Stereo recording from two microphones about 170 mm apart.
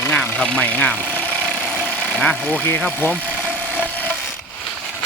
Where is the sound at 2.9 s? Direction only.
10° left (ahead or behind).